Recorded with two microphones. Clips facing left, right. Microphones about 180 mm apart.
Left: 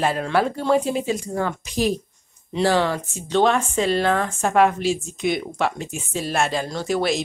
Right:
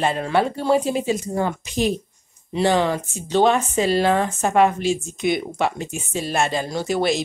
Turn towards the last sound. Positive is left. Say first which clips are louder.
# right 1 dB
turn(degrees=0)  # may be behind; listen again after turning